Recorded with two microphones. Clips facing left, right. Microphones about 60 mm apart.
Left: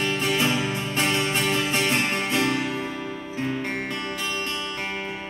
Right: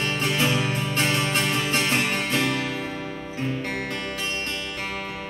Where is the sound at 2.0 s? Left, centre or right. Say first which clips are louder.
Even; centre.